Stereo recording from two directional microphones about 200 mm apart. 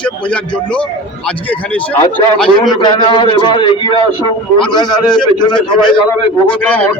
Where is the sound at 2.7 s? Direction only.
20° left (ahead or behind).